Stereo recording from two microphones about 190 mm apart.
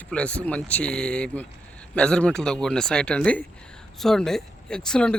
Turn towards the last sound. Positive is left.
turn(degrees=5)  # may be behind; listen again after turning